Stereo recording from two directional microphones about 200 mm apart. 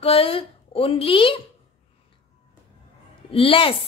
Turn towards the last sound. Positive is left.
turn(degrees=25)  # may be behind; listen again after turning